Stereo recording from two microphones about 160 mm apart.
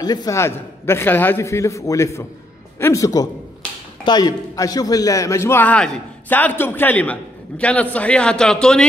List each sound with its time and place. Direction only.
0.0 s a man's voice: 25° left (ahead or behind); by 8.8 s 5° left (ahead or behind)